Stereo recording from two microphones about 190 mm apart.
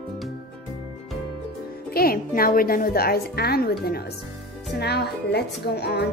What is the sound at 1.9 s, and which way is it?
A woman's voice, 50° left (ahead or behind).